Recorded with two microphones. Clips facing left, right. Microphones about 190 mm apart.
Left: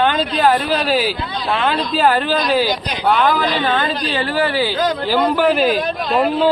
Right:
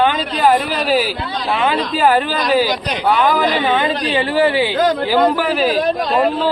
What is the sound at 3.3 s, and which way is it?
A woman's voice, 15° right (ahead or behind).